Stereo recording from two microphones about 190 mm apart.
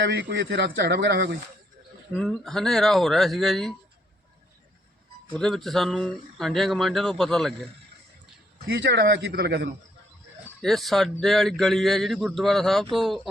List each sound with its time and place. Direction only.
0.0 s speech: 65° right (ahead or behind)
2.1 s speech: centre (ahead or behind)
5.3 s speech: centre (ahead or behind)
8.6 s speech: 65° right (ahead or behind)
10.6 s speech: centre (ahead or behind)